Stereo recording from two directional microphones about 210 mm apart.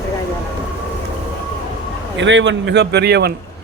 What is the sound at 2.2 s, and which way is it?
A man's voice, 60° right (ahead or behind).